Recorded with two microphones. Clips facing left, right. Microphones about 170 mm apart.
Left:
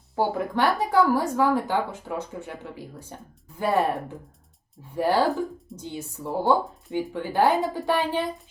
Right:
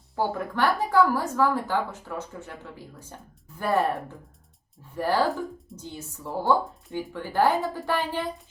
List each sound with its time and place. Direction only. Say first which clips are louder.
0.2 s a woman's voice: left 2 dB; 15° left (ahead or behind)
5.3 s speech: left 4 dB; centre (ahead or behind)
5.7 s a woman's voice: left 4 dB; 15° left (ahead or behind)